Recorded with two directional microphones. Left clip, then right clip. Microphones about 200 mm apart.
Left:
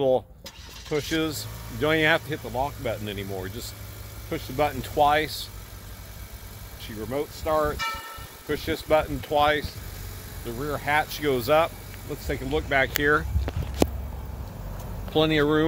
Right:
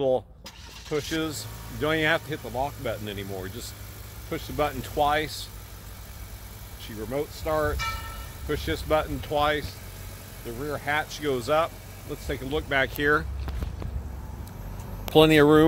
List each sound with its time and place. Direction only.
0.8 s speech: 25° left (ahead or behind)
6.8 s speech: 15° left (ahead or behind)
12.3 s speech: 5° left (ahead or behind)
15.1 s speech: 50° right (ahead or behind)